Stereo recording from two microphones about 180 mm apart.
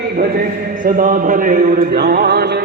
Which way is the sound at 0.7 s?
50° right (ahead or behind).